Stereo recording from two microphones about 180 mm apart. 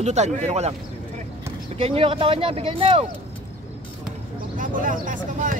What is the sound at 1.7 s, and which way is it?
Speech, 30° right (ahead or behind).